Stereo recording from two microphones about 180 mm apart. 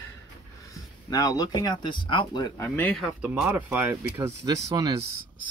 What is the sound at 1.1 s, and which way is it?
Speech, 20° left (ahead or behind).